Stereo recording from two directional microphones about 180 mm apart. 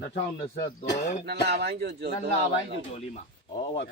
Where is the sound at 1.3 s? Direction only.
65° right (ahead or behind).